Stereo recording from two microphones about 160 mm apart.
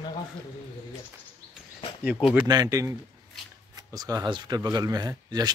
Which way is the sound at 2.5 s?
25° right (ahead or behind).